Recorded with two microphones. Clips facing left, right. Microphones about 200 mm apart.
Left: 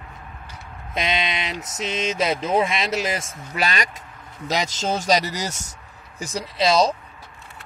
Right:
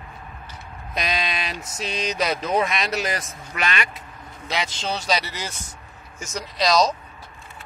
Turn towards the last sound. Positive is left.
turn(degrees=30)  # may be behind; listen again after turning